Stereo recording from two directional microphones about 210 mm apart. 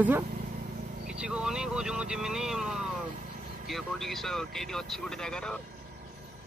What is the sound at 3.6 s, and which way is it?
Speech, centre (ahead or behind).